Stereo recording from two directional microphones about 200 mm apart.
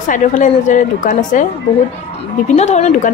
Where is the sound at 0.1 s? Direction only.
40° left (ahead or behind).